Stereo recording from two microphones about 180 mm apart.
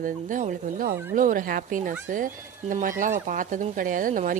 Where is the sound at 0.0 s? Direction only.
45° right (ahead or behind).